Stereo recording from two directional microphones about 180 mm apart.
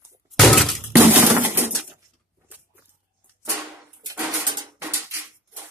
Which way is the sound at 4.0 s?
20° right (ahead or behind).